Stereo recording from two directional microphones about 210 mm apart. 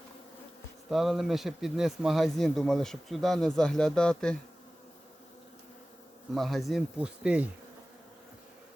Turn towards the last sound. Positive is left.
turn(degrees=-5)  # may be behind; listen again after turning